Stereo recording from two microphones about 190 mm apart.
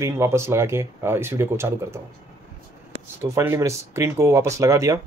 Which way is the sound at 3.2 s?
15° right (ahead or behind).